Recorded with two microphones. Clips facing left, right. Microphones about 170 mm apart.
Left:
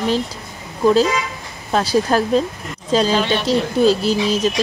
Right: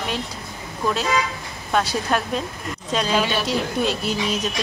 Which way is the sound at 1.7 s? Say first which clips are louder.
Left 5 dB; 35° left (ahead or behind).